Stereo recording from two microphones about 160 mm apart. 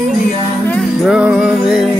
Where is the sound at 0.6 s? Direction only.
5° left (ahead or behind).